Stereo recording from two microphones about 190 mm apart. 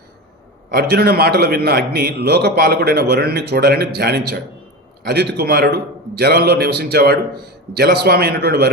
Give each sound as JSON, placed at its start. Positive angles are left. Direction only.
{"t": 0.7, "sound": "a man's voice", "side_deg": -55}